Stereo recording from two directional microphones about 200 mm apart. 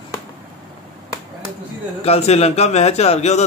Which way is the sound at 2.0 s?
30° left (ahead or behind).